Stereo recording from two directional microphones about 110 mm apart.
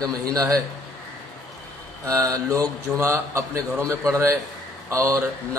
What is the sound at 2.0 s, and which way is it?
A man's voice, 25° right (ahead or behind).